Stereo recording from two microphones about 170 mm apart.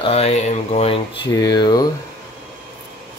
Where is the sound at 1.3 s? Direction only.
20° left (ahead or behind).